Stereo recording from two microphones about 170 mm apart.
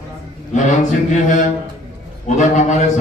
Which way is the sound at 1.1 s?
50° left (ahead or behind).